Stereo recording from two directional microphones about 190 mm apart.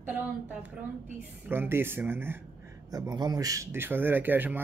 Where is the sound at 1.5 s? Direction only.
10° right (ahead or behind).